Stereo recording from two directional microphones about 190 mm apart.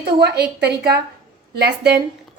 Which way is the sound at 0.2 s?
60° right (ahead or behind).